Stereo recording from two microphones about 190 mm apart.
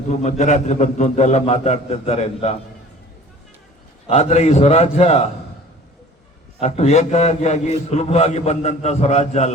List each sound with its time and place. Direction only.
0.1 s a man's voice: 40° left (ahead or behind)
4.0 s a man's voice: 35° left (ahead or behind)
6.6 s a man's voice: 35° left (ahead or behind)